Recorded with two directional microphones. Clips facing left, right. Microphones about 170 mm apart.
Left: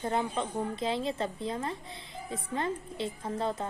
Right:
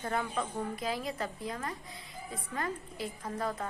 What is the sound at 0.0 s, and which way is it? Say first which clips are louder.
A woman's voice: left 3 dB; 25° left (ahead or behind).